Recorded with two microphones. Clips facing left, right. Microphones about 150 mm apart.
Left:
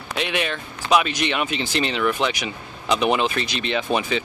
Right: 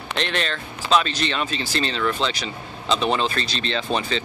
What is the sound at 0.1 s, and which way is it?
Speech, 10° left (ahead or behind).